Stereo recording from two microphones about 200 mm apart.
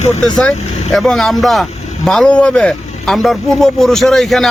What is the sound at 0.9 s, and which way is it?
Speech, centre (ahead or behind).